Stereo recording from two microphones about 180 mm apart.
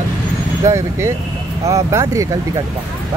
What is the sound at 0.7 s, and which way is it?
Speech, 15° right (ahead or behind).